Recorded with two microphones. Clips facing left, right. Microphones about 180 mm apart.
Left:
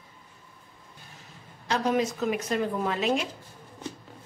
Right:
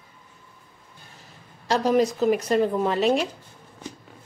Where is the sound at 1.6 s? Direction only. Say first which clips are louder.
Right 5 dB; 35° right (ahead or behind).